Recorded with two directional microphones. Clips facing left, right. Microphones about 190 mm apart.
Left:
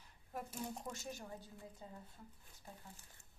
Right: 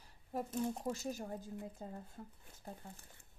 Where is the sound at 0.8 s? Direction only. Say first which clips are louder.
Right 7 dB; 35° right (ahead or behind).